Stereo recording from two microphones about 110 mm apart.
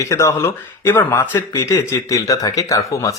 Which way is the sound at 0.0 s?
25° left (ahead or behind).